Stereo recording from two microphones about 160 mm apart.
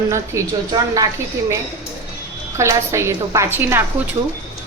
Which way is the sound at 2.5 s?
20° right (ahead or behind).